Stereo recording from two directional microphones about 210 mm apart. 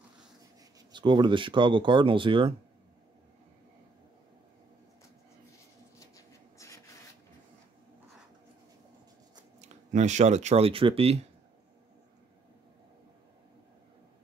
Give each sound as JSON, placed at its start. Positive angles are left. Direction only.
{"t": 0.9, "sound": "speech", "side_deg": -20}
{"t": 5.9, "sound": "writing", "side_deg": 15}
{"t": 9.6, "sound": "speech", "side_deg": -35}